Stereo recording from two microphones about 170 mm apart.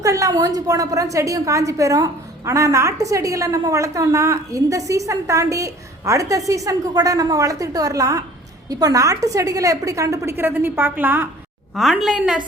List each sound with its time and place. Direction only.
0.0 s a woman's voice: 20° right (ahead or behind)